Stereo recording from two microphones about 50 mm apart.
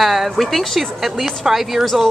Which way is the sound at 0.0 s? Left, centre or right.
Centre.